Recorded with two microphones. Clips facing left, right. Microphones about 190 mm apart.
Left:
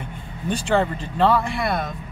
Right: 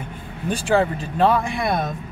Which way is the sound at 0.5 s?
10° right (ahead or behind).